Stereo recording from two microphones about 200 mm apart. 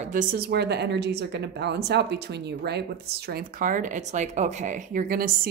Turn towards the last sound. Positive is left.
turn(degrees=-45)  # may be behind; listen again after turning